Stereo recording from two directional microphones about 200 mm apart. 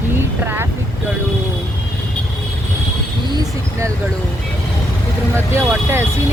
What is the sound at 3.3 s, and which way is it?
Vehicle, 20° right (ahead or behind).